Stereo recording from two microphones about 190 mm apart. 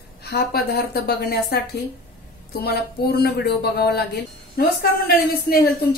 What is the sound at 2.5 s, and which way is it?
Speech, 55° left (ahead or behind).